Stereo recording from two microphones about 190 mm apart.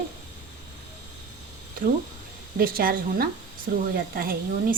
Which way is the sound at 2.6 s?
50° right (ahead or behind).